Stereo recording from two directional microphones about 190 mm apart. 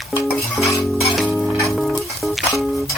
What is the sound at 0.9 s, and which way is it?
Cutlery, centre (ahead or behind).